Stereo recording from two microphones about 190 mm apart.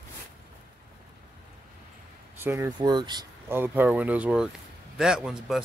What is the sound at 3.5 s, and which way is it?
A man's voice, 10° right (ahead or behind).